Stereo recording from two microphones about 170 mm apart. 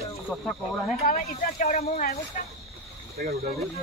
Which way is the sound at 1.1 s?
50° left (ahead or behind).